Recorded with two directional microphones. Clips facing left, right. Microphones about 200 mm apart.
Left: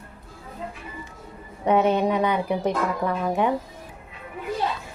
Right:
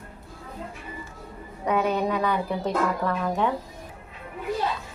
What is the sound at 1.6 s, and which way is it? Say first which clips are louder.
Speech: left 4 dB; 25° left (ahead or behind).